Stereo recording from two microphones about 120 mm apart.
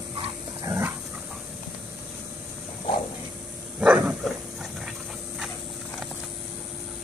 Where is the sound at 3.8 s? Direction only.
10° right (ahead or behind).